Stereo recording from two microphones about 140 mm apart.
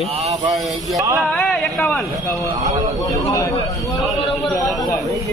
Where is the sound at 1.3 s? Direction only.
5° left (ahead or behind).